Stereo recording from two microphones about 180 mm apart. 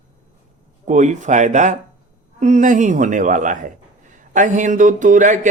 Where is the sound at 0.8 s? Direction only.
40° right (ahead or behind).